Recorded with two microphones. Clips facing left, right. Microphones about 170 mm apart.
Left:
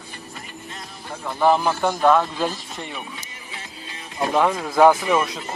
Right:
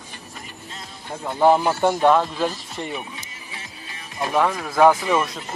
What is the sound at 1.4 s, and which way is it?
Speech, 15° right (ahead or behind).